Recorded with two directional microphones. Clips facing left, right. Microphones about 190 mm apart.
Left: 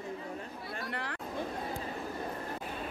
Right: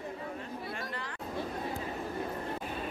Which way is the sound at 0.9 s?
65° left (ahead or behind).